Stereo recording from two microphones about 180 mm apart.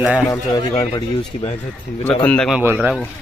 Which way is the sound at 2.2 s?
5° left (ahead or behind).